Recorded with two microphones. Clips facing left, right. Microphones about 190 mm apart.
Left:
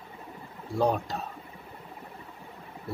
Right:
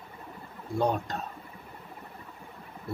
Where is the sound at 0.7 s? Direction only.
5° left (ahead or behind).